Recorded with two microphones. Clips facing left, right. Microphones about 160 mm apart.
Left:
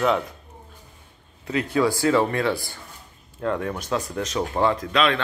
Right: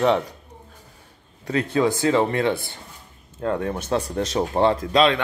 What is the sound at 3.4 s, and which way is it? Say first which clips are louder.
Speech: right 1 dB; 30° right (ahead or behind).